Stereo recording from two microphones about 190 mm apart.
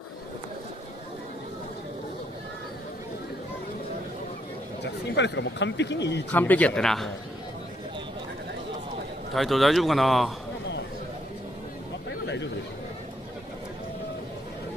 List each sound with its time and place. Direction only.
5.1 s a man's voice: 65° left (ahead or behind)
6.3 s speech: 10° left (ahead or behind)
9.3 s speech: centre (ahead or behind)